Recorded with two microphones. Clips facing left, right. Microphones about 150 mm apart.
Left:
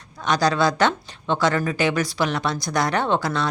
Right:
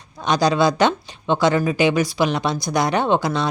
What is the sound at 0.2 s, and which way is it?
Speech, 15° right (ahead or behind).